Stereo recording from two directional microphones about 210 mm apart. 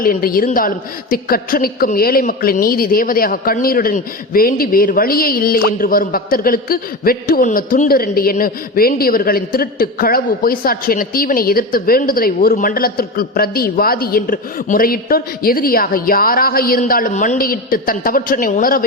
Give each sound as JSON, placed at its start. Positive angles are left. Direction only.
{"t": 0.0, "sound": "a woman's voice", "side_deg": 45}